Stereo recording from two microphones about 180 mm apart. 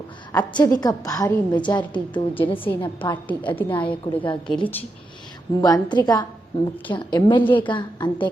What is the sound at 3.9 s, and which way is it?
Speech, 25° left (ahead or behind).